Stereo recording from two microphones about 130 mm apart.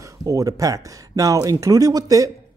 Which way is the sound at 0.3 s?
25° right (ahead or behind).